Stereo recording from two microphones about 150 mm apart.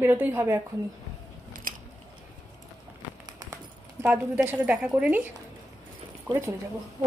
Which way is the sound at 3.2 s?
20° right (ahead or behind).